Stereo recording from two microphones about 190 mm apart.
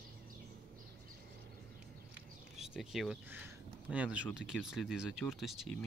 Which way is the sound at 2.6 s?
Centre (ahead or behind).